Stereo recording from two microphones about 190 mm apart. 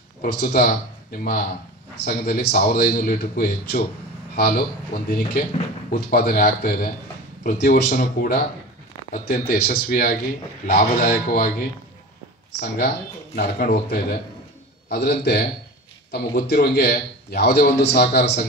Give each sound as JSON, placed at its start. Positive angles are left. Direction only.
{"t": 0.2, "sound": "a man's voice", "side_deg": 55}
{"t": 5.9, "sound": "a man's voice", "side_deg": 55}
{"t": 7.9, "sound": "a man's voice", "side_deg": 45}
{"t": 12.5, "sound": "a man's voice", "side_deg": 55}